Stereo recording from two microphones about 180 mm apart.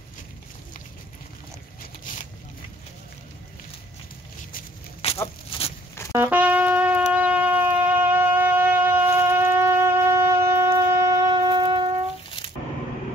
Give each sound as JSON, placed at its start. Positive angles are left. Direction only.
{"t": 5.0, "sound": "a sound", "side_deg": 35}
{"t": 5.5, "sound": "zipper", "side_deg": 30}
{"t": 6.1, "sound": "shofar", "side_deg": -10}